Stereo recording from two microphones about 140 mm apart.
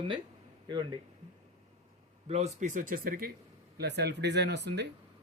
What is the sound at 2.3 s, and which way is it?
Speech, 50° right (ahead or behind).